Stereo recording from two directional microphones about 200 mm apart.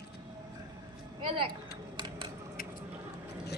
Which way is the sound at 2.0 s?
25° right (ahead or behind).